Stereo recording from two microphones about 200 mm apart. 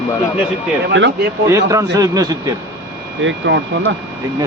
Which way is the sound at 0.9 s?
65° right (ahead or behind).